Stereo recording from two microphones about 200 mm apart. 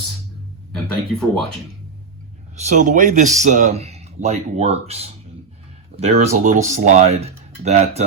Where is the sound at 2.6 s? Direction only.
40° right (ahead or behind).